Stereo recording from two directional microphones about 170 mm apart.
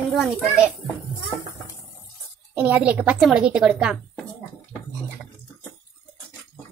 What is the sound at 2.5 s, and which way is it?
A woman's voice, 10° right (ahead or behind).